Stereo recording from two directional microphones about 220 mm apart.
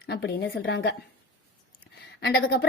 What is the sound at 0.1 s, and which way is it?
Speech, 50° left (ahead or behind).